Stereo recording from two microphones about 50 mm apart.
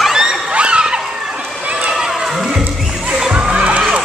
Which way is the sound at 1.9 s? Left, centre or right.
Centre.